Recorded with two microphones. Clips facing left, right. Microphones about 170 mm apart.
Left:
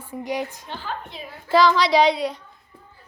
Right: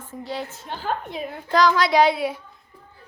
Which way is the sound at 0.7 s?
50° right (ahead or behind).